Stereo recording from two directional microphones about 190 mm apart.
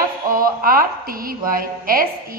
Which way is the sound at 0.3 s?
50° right (ahead or behind).